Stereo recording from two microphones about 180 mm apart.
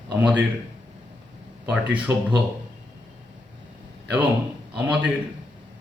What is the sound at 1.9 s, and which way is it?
Speech, 10° right (ahead or behind).